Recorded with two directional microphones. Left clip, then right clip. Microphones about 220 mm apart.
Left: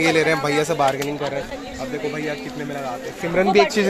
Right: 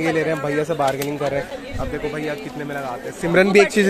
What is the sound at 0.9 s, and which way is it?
Speech, 35° right (ahead or behind).